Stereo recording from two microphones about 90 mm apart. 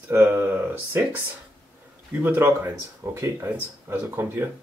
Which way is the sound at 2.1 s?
20° right (ahead or behind).